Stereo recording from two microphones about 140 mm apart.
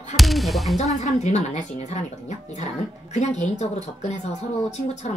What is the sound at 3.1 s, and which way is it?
Speech, 55° left (ahead or behind).